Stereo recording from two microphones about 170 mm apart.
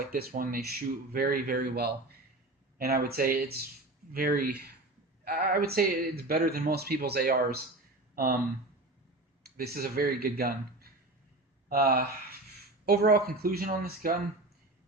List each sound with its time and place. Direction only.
0.0 s speech: 60° right (ahead or behind)
9.4 s speech: 60° right (ahead or behind)